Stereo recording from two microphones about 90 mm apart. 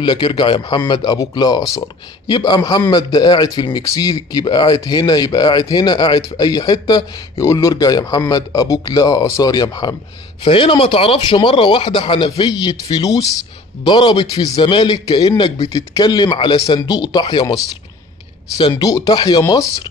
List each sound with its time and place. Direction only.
0.0 s speech: 60° left (ahead or behind)
3.8 s speech: 40° left (ahead or behind)
10.4 s speech: 70° left (ahead or behind); by 15.2 s 50° left (ahead or behind)
15.2 s speech: 70° left (ahead or behind)
18.6 s speech: 50° left (ahead or behind)